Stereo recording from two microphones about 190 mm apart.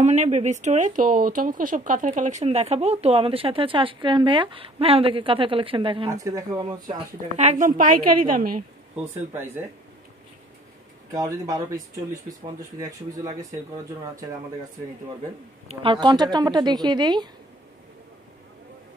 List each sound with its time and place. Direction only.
0.0 s speech: 35° right (ahead or behind)
6.0 s a woman's voice: 15° right (ahead or behind)
7.3 s a woman's voice: 40° right (ahead or behind)
8.9 s speech: 10° right (ahead or behind)
11.1 s speech: 20° right (ahead or behind)
15.7 s a woman's voice: 25° right (ahead or behind)